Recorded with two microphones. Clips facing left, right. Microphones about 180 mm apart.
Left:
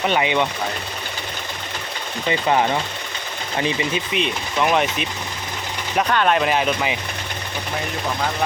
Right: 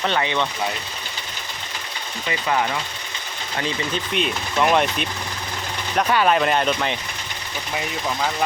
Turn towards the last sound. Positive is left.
turn(degrees=5)  # may be behind; listen again after turning